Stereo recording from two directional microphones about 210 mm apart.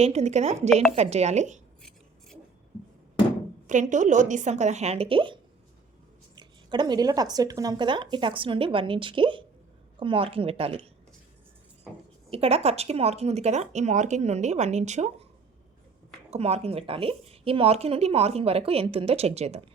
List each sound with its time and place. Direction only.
0.0 s speech: 30° right (ahead or behind)
3.7 s a woman's voice: 35° right (ahead or behind)
12.3 s speech: 30° right (ahead or behind)
16.3 s a woman's voice: 30° right (ahead or behind)